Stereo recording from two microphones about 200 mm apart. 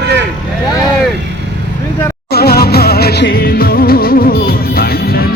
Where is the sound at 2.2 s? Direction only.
50° left (ahead or behind).